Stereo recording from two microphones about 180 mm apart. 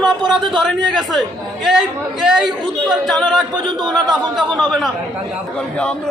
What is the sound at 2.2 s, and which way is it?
A man's voice, centre (ahead or behind).